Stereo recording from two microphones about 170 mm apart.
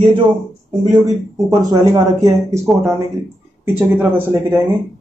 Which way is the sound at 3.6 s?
15° right (ahead or behind).